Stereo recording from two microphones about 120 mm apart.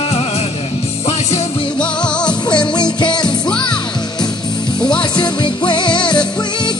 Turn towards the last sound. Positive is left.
turn(degrees=40)  # may be behind; listen again after turning